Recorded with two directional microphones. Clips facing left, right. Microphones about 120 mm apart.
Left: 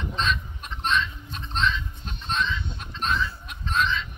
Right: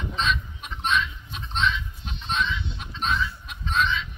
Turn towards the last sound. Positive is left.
turn(degrees=0)  # may be behind; listen again after turning